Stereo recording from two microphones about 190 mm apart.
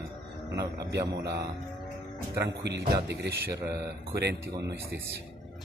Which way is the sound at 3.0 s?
60° right (ahead or behind).